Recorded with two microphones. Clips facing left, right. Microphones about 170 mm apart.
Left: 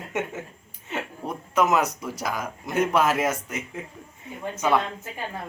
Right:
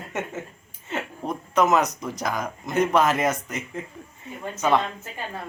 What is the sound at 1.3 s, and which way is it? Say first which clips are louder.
Speech: right 2 dB; 10° left (ahead or behind).